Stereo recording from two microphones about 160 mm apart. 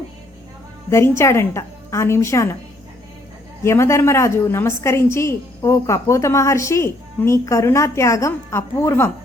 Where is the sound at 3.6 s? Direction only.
15° left (ahead or behind).